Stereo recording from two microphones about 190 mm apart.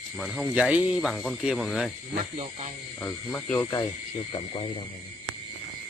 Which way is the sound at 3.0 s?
10° left (ahead or behind).